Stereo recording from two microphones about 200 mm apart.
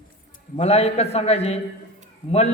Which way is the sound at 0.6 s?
30° left (ahead or behind).